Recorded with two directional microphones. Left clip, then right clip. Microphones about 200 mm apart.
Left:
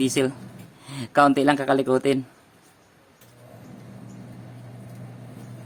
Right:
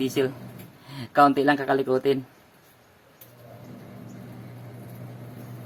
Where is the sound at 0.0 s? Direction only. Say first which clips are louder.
Left 2 dB; 55° left (ahead or behind).